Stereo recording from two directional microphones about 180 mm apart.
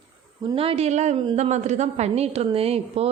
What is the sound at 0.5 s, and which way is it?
A woman's voice, 35° right (ahead or behind).